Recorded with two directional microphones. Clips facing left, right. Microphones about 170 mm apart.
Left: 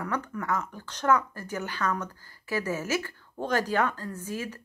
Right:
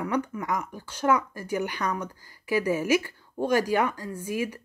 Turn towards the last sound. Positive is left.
turn(degrees=-10)  # may be behind; listen again after turning